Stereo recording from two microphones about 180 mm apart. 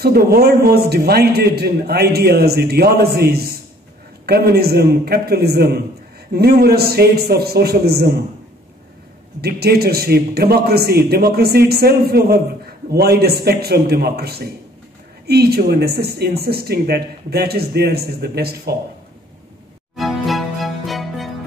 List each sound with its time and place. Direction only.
0.0 s a man's voice: 60° right (ahead or behind)
9.4 s a man's voice: 60° right (ahead or behind)
20.0 s music: centre (ahead or behind)